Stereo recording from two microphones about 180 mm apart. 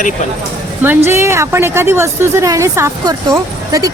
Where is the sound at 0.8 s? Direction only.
10° right (ahead or behind).